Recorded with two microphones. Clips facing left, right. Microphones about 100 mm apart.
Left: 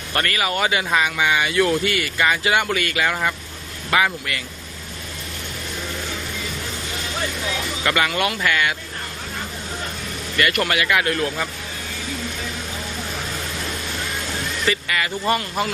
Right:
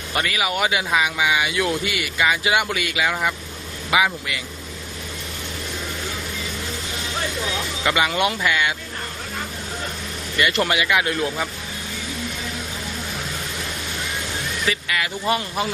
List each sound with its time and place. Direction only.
0.1 s speech: 5° right (ahead or behind)
7.9 s speech: 20° right (ahead or behind)
10.3 s speech: 20° right (ahead or behind)
14.6 s speech: centre (ahead or behind)